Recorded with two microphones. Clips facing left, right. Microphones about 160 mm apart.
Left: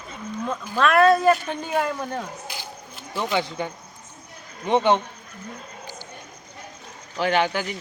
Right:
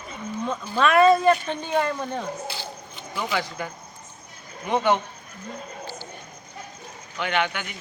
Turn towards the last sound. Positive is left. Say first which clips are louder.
# left 4 dB
turn(degrees=35)  # may be behind; listen again after turning